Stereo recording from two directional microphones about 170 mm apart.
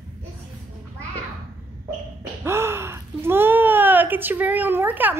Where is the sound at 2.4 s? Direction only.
15° right (ahead or behind).